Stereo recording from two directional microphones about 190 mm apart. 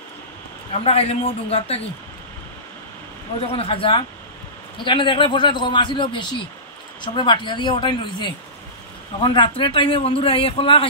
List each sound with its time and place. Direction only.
0.8 s a man's voice: 30° left (ahead or behind)
3.5 s a man's voice: 30° left (ahead or behind)